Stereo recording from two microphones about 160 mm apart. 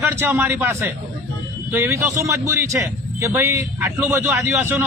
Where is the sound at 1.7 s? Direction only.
15° right (ahead or behind).